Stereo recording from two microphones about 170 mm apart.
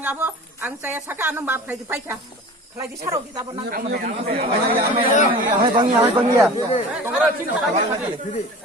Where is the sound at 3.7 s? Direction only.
55° right (ahead or behind).